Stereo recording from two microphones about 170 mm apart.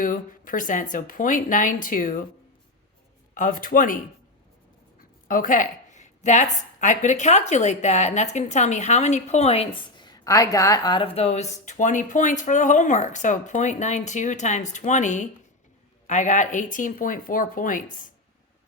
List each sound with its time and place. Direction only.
0.0 s speech: 50° left (ahead or behind)
3.3 s a woman's voice: 50° left (ahead or behind); by 10.1 s 35° left (ahead or behind)
10.1 s speech: 20° left (ahead or behind); by 17.8 s 50° left (ahead or behind)